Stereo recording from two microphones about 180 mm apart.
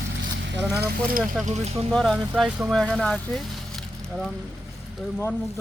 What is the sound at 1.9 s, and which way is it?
Speech, 5° left (ahead or behind).